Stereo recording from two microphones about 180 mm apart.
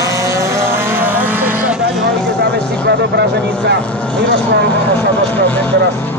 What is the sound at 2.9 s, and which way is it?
Speech, 65° right (ahead or behind).